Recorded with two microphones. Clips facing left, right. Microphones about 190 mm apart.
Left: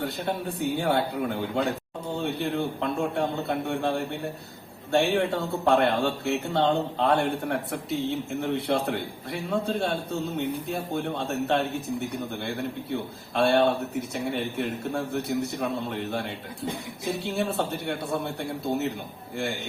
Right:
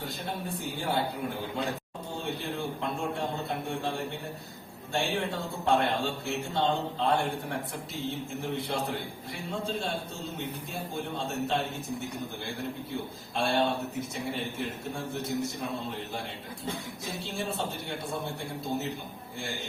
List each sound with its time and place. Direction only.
0.0 s a man's voice: 65° left (ahead or behind)
13.3 s a man's voice: 65° left (ahead or behind)
17.2 s a man's voice: 65° left (ahead or behind)